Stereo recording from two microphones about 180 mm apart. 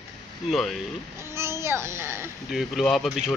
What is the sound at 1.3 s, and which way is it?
Speech, 15° right (ahead or behind).